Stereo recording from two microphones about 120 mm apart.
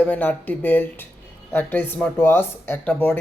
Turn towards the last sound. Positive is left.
turn(degrees=10)  # may be behind; listen again after turning